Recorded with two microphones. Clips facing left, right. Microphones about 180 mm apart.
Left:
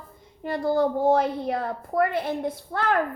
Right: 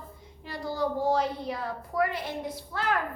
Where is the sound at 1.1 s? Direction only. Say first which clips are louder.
Left 5 dB; 55° left (ahead or behind).